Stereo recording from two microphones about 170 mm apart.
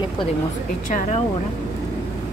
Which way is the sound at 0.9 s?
45° left (ahead or behind).